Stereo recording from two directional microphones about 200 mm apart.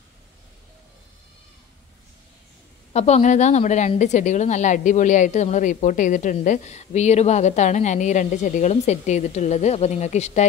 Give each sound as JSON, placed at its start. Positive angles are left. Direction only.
{"t": 2.9, "sound": "a woman's voice", "side_deg": 35}